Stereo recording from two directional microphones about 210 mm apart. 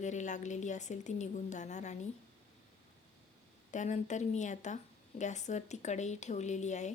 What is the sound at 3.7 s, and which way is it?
A woman's voice, 35° left (ahead or behind).